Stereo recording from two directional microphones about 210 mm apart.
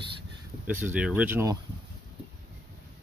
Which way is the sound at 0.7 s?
5° right (ahead or behind).